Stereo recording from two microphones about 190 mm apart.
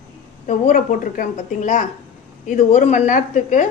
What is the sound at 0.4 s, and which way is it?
A woman's voice, 45° left (ahead or behind).